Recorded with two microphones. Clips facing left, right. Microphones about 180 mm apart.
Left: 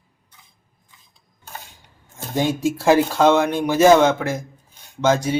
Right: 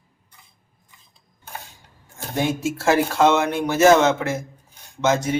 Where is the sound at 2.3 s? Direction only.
15° left (ahead or behind).